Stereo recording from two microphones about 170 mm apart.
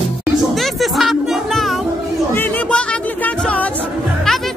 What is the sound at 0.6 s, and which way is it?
Music, centre (ahead or behind).